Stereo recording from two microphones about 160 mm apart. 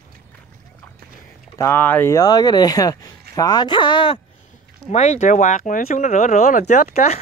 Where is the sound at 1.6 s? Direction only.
15° left (ahead or behind); by 4.2 s 30° left (ahead or behind).